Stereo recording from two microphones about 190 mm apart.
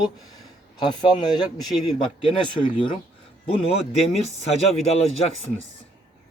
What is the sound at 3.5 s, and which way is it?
A man's voice, 30° left (ahead or behind).